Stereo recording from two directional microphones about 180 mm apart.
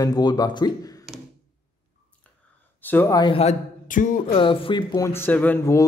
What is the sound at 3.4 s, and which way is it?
Speech, 45° left (ahead or behind).